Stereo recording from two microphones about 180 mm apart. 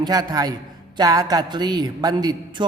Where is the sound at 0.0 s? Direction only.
20° right (ahead or behind).